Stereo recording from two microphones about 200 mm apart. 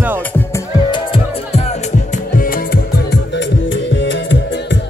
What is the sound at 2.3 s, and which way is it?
Music, 45° left (ahead or behind).